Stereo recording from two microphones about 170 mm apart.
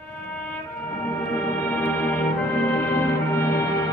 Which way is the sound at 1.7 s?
10° left (ahead or behind).